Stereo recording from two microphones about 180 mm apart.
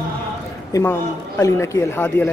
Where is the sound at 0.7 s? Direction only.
15° left (ahead or behind).